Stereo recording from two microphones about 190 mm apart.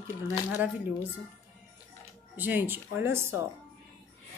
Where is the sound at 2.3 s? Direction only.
10° right (ahead or behind).